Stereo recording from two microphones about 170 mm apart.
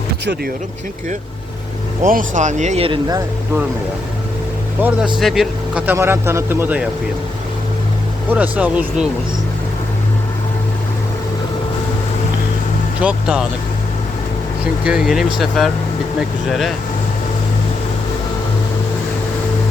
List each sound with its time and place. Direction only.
2.0 s speech: 50° right (ahead or behind); by 3.0 s 35° right (ahead or behind)
4.8 s speech: 10° right (ahead or behind)
8.3 s speech: 10° right (ahead or behind)
13.0 s speech: 5° right (ahead or behind)
14.8 s speech: 5° right (ahead or behind)